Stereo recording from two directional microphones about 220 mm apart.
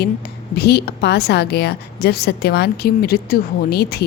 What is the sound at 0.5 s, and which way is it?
A woman's voice, 45° left (ahead or behind).